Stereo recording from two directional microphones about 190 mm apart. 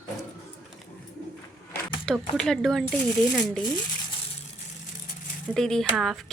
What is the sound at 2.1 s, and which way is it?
Speech, 5° left (ahead or behind).